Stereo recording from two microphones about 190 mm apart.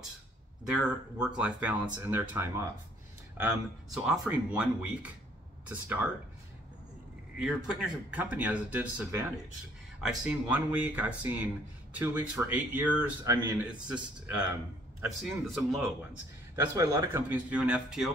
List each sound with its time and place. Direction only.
0.7 s speech: 5° right (ahead or behind)
3.9 s speech: centre (ahead or behind)
7.3 s speech: 5° right (ahead or behind)
13.3 s a man's voice: 20° right (ahead or behind)
13.8 s speech: 5° right (ahead or behind)
16.5 s speech: 15° right (ahead or behind); by 18.1 s centre (ahead or behind)